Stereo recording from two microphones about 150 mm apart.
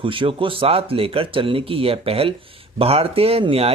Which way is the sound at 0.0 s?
35° right (ahead or behind).